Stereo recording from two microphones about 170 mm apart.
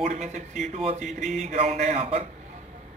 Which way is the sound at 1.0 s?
Centre (ahead or behind).